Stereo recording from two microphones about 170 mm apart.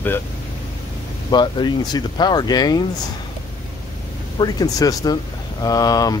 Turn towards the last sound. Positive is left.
turn(degrees=20)  # may be behind; listen again after turning